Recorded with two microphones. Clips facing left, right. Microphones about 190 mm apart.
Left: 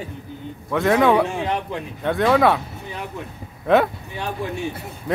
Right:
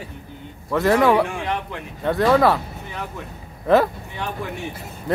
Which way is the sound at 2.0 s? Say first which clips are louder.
Right 1 dB; centre (ahead or behind).